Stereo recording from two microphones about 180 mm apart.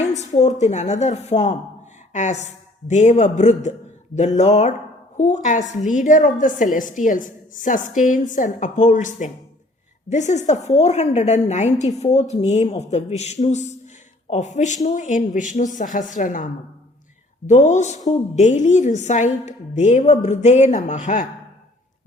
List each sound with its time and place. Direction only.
0.2 s a woman's voice: 40° left (ahead or behind)